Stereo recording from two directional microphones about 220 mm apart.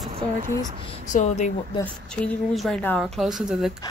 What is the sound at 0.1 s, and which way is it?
Speech, 30° right (ahead or behind).